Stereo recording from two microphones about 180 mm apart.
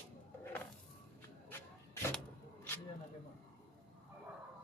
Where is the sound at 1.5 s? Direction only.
15° left (ahead or behind).